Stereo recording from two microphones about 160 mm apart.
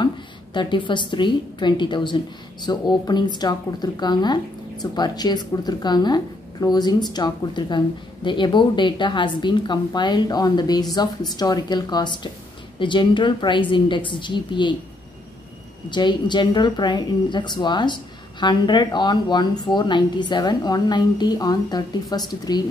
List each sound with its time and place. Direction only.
0.0 s a woman's voice: 30° left (ahead or behind)
15.9 s speech: 30° left (ahead or behind)